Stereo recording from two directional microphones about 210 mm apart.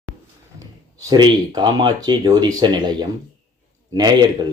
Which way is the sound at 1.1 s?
20° right (ahead or behind).